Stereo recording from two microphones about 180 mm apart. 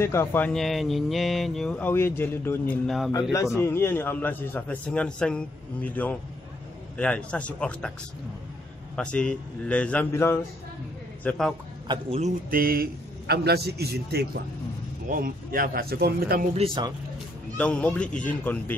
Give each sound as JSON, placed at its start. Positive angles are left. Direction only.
{"t": 0.0, "sound": "speech", "side_deg": 15}
{"t": 8.9, "sound": "speech", "side_deg": 5}
{"t": 11.2, "sound": "a man's voice", "side_deg": 5}
{"t": 11.9, "sound": "a man's voice", "side_deg": -35}
{"t": 15.0, "sound": "a man's voice", "side_deg": -50}
{"t": 16.5, "sound": "speech", "side_deg": -30}
{"t": 17.6, "sound": "speech", "side_deg": 5}